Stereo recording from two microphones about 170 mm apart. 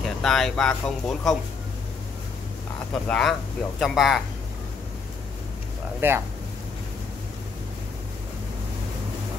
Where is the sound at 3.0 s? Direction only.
5° left (ahead or behind).